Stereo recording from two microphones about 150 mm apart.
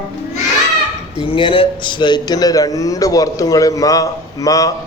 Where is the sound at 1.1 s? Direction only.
35° left (ahead or behind).